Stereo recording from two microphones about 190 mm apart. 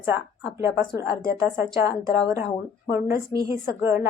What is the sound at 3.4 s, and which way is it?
Speech, 10° right (ahead or behind).